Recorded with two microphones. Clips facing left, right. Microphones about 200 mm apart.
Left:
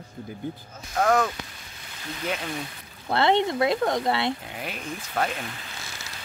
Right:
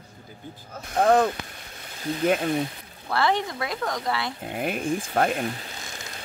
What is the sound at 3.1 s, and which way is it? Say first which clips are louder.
Speech: left 3 dB; 25° left (ahead or behind).